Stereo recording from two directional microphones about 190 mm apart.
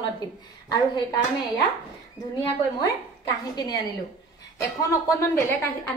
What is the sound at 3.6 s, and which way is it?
Speech, 20° left (ahead or behind).